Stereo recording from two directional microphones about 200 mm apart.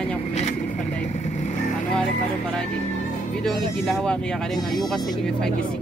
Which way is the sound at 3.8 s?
Centre (ahead or behind).